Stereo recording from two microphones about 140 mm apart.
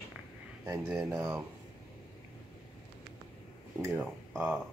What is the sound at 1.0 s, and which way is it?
Speech, 25° right (ahead or behind).